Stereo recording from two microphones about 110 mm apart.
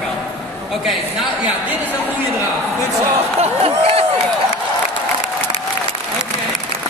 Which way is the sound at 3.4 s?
70° right (ahead or behind).